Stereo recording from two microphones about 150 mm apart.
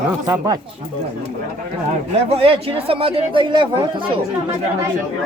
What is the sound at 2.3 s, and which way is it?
Speech, 40° right (ahead or behind).